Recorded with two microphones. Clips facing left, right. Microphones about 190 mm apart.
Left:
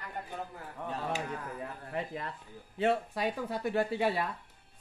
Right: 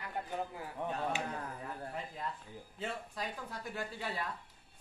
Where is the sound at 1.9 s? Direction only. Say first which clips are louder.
Left 5 dB; 75° left (ahead or behind).